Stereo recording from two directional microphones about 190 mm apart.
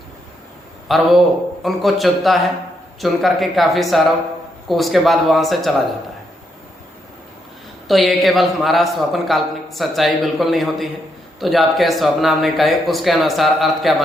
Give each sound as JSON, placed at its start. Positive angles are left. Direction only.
{"t": 0.9, "sound": "a man's voice", "side_deg": 0}
{"t": 7.9, "sound": "a man's voice", "side_deg": 0}